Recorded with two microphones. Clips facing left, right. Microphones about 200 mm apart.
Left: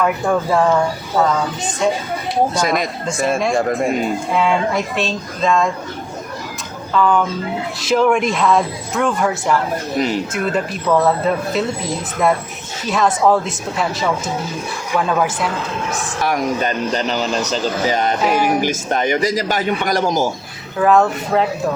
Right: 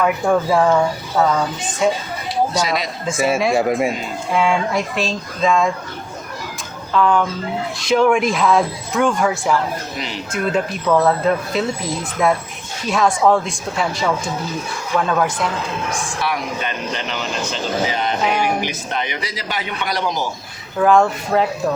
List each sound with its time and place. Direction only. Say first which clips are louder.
0.0 s speech: right 1 dB; centre (ahead or behind)
1.8 s speech: even; 5° right (ahead or behind)
2.5 s speech: left 2 dB; 50° left (ahead or behind)
3.1 s speech: right 1 dB; centre (ahead or behind)
6.9 s speech: left 1 dB; centre (ahead or behind)
16.2 s a man's voice: left 6 dB; 40° left (ahead or behind)
18.3 s speech: left 4 dB; 5° left (ahead or behind)
18.6 s speech: left 6 dB; 45° left (ahead or behind)
20.7 s speech: even; centre (ahead or behind)